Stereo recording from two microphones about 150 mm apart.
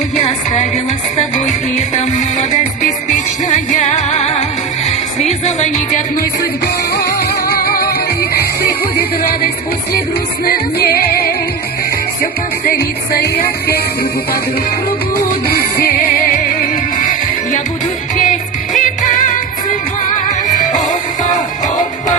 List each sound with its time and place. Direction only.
0.2 s music: 45° left (ahead or behind)
5.5 s music: 50° left (ahead or behind)
6.9 s music: 90° left
12.6 s music: 90° left
15.4 s music: 90° left
18.8 s music: 60° left (ahead or behind)